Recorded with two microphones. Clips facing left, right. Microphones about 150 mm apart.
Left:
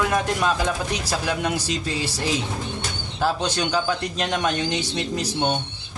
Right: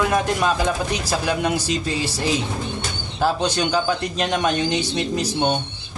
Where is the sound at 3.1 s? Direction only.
10° right (ahead or behind).